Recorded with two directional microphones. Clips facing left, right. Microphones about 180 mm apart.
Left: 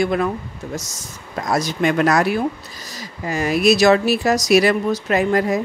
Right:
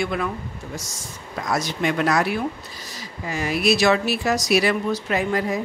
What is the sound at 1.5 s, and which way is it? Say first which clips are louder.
Speech: left 4 dB; 40° left (ahead or behind).